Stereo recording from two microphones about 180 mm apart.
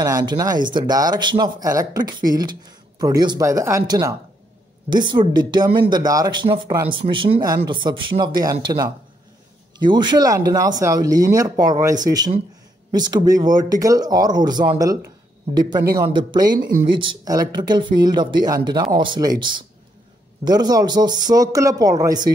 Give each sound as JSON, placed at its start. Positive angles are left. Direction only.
{"t": 0.0, "sound": "speech", "side_deg": -20}
{"t": 16.0, "sound": "speech", "side_deg": -25}